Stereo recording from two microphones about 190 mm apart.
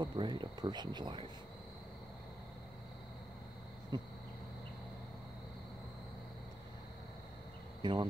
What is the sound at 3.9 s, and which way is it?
Insect, 25° right (ahead or behind).